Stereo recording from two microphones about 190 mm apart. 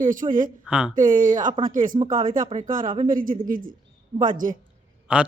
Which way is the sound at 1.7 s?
45° right (ahead or behind).